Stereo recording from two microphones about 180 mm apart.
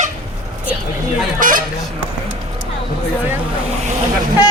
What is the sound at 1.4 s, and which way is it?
Honk, 50° right (ahead or behind).